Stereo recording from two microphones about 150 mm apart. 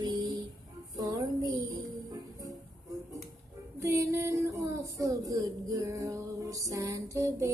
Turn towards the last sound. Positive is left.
turn(degrees=-20)  # may be behind; listen again after turning